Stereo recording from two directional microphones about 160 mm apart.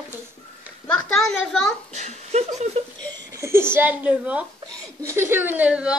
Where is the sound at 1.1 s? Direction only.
5° left (ahead or behind).